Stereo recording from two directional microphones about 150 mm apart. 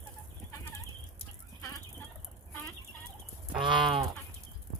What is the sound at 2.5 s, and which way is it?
Fowl, 15° left (ahead or behind).